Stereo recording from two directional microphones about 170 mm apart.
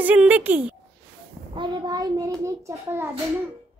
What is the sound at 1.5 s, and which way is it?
A child's voice, 25° right (ahead or behind).